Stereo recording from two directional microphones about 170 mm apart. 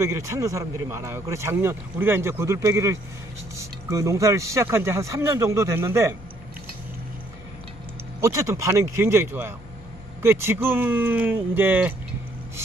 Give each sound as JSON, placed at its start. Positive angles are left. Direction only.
{"t": 0.0, "sound": "speech", "side_deg": -15}
{"t": 8.2, "sound": "speech", "side_deg": -15}